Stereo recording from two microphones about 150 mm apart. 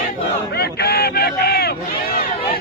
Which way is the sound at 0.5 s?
90° left.